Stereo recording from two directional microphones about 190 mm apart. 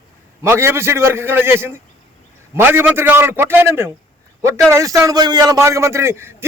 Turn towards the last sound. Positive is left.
turn(degrees=-15)  # may be behind; listen again after turning